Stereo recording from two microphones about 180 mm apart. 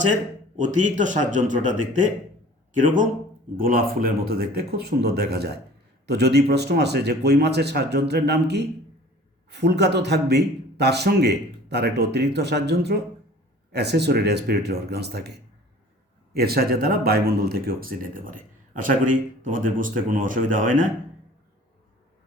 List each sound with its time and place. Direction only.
0.1 s a man's voice: 45° right (ahead or behind); by 15.3 s 65° right (ahead or behind)
16.3 s speech: 60° right (ahead or behind)